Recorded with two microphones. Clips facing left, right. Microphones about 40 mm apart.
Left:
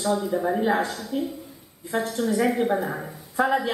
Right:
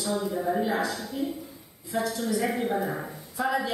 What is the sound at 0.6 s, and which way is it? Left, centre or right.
A woman's voice, left.